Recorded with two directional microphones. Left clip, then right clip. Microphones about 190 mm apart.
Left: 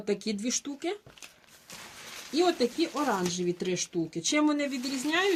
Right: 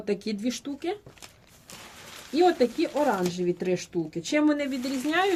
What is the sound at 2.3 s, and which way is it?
Speech, 45° left (ahead or behind).